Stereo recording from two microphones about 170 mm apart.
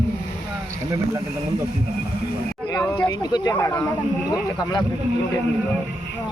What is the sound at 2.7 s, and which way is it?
Speech, 20° left (ahead or behind).